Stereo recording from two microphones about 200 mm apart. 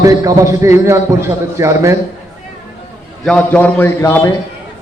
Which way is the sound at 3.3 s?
5° left (ahead or behind).